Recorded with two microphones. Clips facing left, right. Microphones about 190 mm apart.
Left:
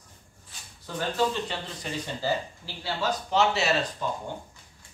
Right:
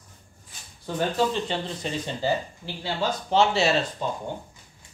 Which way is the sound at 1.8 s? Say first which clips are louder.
Right 2 dB; 25° right (ahead or behind).